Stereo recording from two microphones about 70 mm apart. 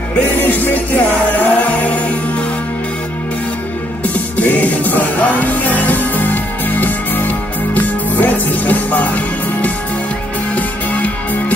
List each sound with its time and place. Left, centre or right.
0.4 s music: left
4.0 s music: left